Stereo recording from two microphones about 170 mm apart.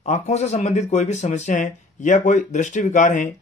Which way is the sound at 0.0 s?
40° left (ahead or behind).